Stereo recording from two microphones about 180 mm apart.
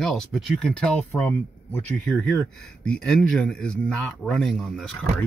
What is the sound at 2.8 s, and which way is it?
A man's voice, 5° left (ahead or behind).